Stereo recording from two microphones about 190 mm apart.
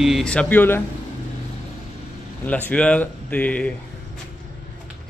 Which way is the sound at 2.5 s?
10° left (ahead or behind).